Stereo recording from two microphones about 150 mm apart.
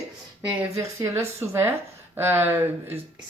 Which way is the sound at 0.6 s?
20° right (ahead or behind).